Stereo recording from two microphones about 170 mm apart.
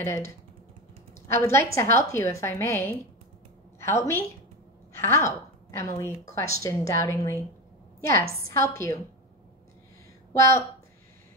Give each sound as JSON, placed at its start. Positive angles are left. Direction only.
{"t": 0.0, "sound": "a woman's voice", "side_deg": 15}
{"t": 10.3, "sound": "a woman's voice", "side_deg": 15}